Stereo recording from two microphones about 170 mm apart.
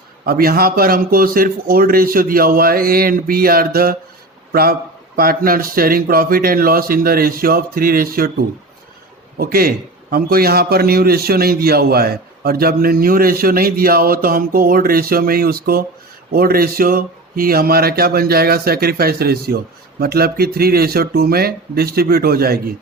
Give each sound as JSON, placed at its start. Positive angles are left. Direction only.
{"t": 0.3, "sound": "a man's voice", "side_deg": -60}